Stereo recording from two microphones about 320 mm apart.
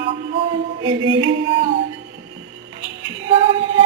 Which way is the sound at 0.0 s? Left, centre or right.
Centre.